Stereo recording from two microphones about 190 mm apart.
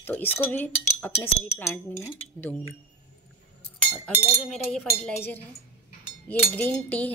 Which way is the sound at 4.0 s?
Centre (ahead or behind).